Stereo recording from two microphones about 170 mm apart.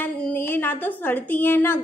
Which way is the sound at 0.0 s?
10° left (ahead or behind).